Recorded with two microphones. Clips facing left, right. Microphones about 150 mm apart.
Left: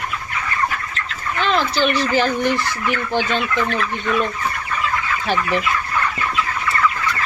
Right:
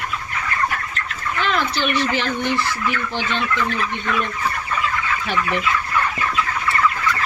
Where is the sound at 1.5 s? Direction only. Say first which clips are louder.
Left 4 dB; 35° left (ahead or behind).